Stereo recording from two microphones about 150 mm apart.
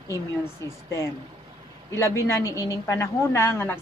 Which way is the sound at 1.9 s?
20° left (ahead or behind).